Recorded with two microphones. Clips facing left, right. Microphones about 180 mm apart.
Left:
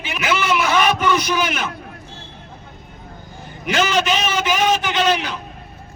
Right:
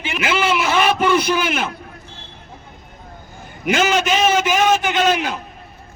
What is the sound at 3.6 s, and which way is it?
A man's voice, 45° right (ahead or behind).